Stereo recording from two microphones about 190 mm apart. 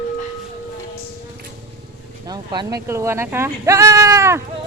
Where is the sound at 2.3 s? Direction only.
20° right (ahead or behind).